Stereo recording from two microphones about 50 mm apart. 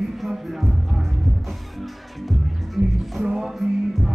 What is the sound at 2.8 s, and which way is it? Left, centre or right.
Music, right.